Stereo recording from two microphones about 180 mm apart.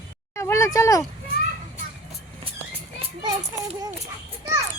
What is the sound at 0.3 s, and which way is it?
Speech, 15° left (ahead or behind).